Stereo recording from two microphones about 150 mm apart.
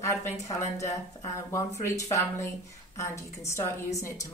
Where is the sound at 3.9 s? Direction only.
20° left (ahead or behind).